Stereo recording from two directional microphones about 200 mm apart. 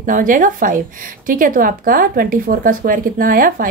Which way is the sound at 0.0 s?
40° right (ahead or behind).